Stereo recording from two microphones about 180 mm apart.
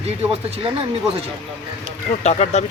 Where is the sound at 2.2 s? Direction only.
40° left (ahead or behind).